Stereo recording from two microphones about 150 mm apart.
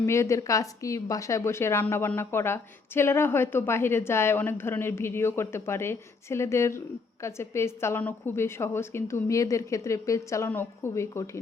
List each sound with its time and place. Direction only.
0.0 s a woman's voice: 20° left (ahead or behind)